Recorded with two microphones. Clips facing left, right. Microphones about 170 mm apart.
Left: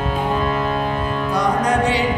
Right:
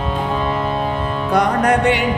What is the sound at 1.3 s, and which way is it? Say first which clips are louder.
Music: right 4 dB; 65° right (ahead or behind).